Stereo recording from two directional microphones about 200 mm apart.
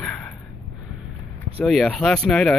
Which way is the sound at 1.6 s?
Centre (ahead or behind).